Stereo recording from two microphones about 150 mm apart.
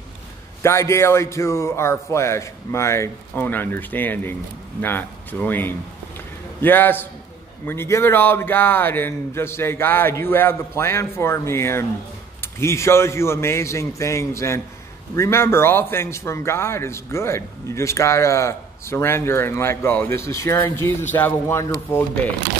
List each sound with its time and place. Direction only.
0.6 s a man's voice: 20° left (ahead or behind)